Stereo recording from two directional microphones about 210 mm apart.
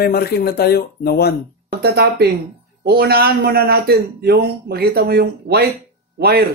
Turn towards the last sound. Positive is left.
turn(degrees=-50)  # may be behind; listen again after turning